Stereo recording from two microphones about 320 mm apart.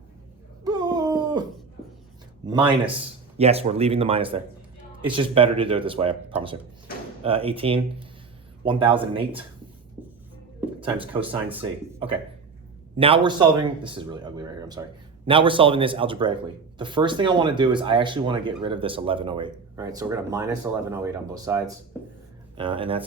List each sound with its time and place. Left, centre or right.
0.6 s a sound: centre
2.5 s speech: centre
11.1 s speech: centre